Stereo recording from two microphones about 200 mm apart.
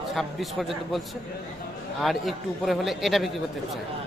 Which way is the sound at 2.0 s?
Centre (ahead or behind).